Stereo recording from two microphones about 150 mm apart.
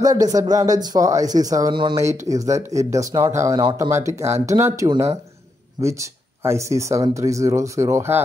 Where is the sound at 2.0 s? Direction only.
20° right (ahead or behind).